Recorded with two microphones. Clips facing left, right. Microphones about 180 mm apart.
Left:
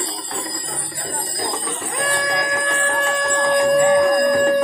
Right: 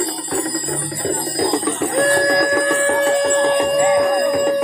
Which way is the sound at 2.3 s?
35° right (ahead or behind).